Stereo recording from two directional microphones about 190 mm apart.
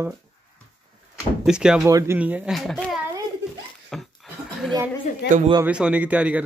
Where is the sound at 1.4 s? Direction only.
5° right (ahead or behind).